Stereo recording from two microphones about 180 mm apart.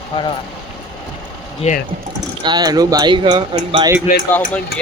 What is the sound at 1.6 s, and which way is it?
Speech, 35° left (ahead or behind).